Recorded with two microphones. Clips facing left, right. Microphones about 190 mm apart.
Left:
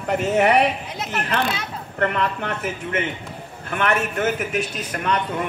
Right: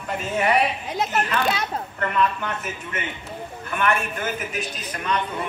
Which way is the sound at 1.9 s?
75° left (ahead or behind).